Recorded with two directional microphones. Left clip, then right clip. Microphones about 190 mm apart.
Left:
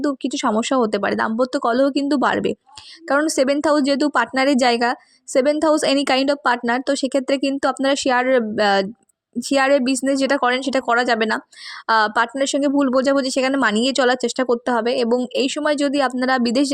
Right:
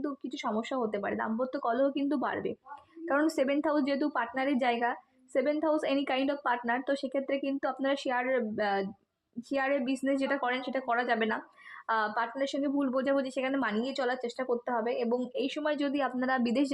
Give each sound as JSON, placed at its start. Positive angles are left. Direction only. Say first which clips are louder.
{"t": 0.0, "sound": "speech", "louder": "left 14 dB", "side_deg": 45}
{"t": 3.1, "sound": "speech", "louder": "left 11 dB", "side_deg": 30}